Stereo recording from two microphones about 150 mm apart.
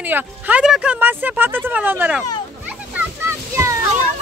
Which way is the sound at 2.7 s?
15° right (ahead or behind).